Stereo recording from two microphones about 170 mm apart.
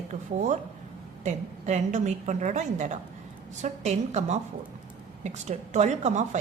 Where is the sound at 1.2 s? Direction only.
45° right (ahead or behind).